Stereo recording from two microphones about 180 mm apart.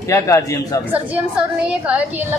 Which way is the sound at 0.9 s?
5° right (ahead or behind).